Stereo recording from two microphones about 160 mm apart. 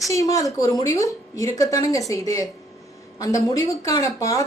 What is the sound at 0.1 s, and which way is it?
A woman's voice, 20° left (ahead or behind).